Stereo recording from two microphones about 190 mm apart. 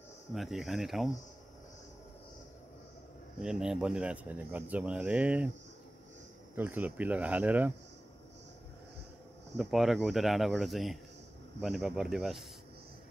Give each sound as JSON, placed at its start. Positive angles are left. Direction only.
{"t": 0.3, "sound": "speech", "side_deg": 0}
{"t": 3.3, "sound": "speech", "side_deg": -5}
{"t": 6.5, "sound": "speech", "side_deg": -10}
{"t": 9.6, "sound": "speech", "side_deg": 0}